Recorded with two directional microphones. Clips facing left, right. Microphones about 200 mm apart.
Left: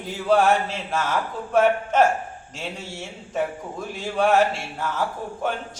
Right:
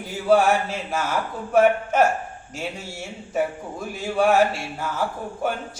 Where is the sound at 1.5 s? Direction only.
5° right (ahead or behind).